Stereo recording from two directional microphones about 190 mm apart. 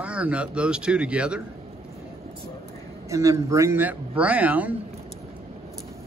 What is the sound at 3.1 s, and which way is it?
Speech, 15° right (ahead or behind).